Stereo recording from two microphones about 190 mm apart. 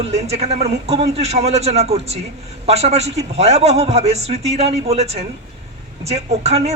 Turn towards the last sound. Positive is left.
turn(degrees=-35)  # may be behind; listen again after turning